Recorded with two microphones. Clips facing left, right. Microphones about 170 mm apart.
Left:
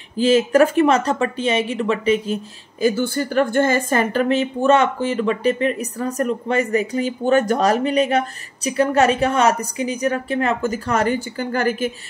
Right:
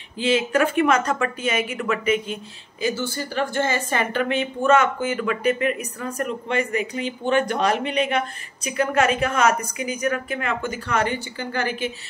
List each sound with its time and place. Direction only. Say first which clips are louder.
0.2 s speech: left 6 dB; 45° left (ahead or behind)